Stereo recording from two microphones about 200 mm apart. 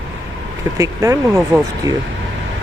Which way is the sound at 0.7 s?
15° right (ahead or behind).